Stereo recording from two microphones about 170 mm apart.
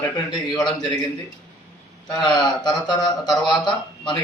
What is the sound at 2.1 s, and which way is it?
A man's voice, 25° left (ahead or behind).